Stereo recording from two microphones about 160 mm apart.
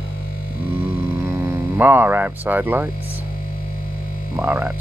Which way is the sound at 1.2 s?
15° right (ahead or behind).